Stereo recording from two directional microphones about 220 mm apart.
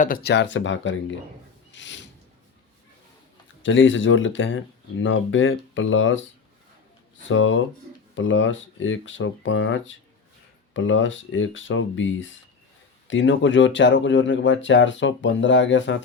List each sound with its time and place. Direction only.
0.0 s speech: 45° left (ahead or behind)
1.7 s mechanisms: 55° left (ahead or behind)
3.6 s speech: 60° left (ahead or behind)
7.3 s speech: 60° left (ahead or behind)